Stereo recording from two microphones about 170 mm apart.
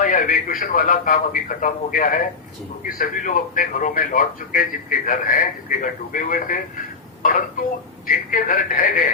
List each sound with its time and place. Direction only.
0.0 s a man's voice: 55° left (ahead or behind)